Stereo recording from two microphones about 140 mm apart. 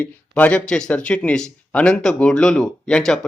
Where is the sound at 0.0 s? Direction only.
10° left (ahead or behind).